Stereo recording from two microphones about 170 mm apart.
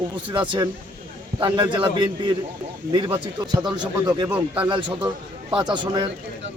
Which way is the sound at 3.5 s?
25° right (ahead or behind).